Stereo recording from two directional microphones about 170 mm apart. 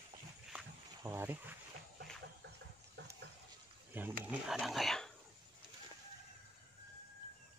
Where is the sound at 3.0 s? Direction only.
90° right.